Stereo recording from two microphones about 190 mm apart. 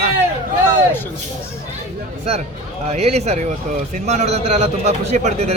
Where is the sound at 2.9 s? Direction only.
35° right (ahead or behind).